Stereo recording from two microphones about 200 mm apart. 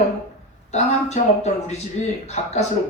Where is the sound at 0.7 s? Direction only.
35° left (ahead or behind).